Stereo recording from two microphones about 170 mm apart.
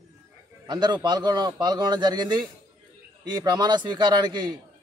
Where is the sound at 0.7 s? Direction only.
25° right (ahead or behind).